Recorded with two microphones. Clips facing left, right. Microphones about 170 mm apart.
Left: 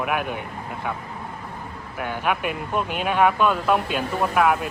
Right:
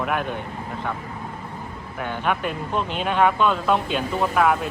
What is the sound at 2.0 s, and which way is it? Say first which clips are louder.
Speech: even; 5° left (ahead or behind).